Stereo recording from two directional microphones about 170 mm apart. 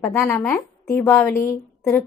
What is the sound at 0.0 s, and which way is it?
A woman's voice, 15° left (ahead or behind).